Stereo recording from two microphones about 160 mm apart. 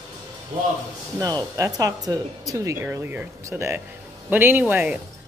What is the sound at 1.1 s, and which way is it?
A woman's voice, 25° right (ahead or behind).